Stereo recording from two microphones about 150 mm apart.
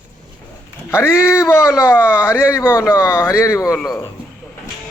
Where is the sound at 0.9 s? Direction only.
15° left (ahead or behind).